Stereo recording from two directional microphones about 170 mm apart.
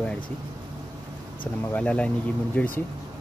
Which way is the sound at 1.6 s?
10° left (ahead or behind).